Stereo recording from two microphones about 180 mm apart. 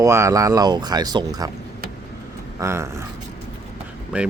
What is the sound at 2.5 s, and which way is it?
Speech, 15° right (ahead or behind).